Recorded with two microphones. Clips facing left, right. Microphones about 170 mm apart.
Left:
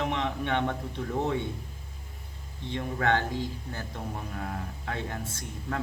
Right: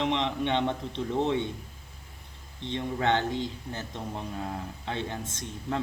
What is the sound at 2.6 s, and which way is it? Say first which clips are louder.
Speech: right 1 dB; 25° right (ahead or behind).